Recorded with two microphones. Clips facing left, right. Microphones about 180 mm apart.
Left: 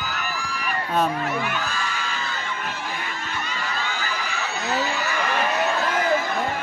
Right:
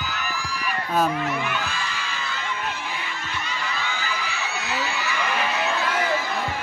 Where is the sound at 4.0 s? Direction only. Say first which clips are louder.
Left 1 dB; 45° left (ahead or behind).